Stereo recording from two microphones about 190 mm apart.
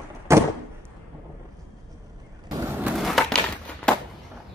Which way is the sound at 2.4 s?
20° right (ahead or behind).